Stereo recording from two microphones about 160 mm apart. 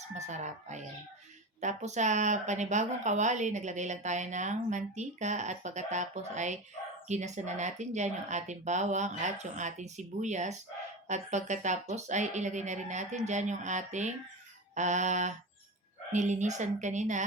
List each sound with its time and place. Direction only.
0.1 s speech: 45° right (ahead or behind)